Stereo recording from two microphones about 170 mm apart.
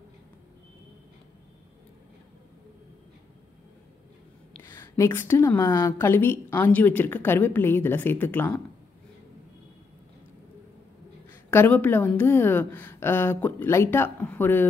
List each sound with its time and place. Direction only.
4.6 s a woman's voice: 15° left (ahead or behind)
11.5 s a woman's voice: 10° left (ahead or behind)